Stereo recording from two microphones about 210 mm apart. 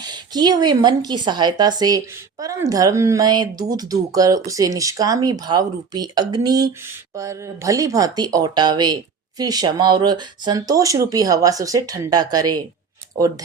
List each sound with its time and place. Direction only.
0.0 s speech: 20° right (ahead or behind)